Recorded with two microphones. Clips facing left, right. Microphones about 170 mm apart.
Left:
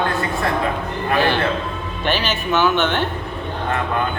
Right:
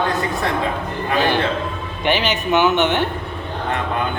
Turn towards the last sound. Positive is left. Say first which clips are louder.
# right 2 dB
turn(degrees=-15)  # may be behind; listen again after turning